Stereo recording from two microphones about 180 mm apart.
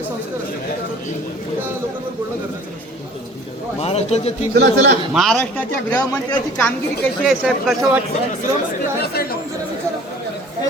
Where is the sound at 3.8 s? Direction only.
35° left (ahead or behind).